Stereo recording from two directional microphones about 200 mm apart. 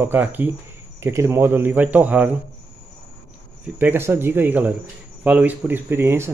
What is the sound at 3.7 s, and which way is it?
Speech, 10° right (ahead or behind).